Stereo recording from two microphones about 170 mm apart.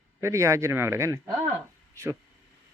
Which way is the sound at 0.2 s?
15° right (ahead or behind).